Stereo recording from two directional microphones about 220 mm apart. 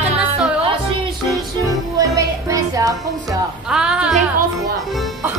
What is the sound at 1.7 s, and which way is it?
Music, 15° right (ahead or behind).